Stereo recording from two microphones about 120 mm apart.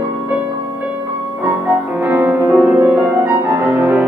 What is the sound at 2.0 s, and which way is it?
Music, 15° right (ahead or behind).